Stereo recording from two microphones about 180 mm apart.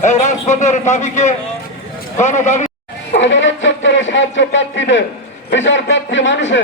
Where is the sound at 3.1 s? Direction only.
90° left.